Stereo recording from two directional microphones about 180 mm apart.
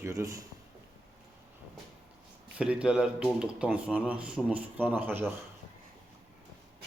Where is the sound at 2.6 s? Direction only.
5° right (ahead or behind).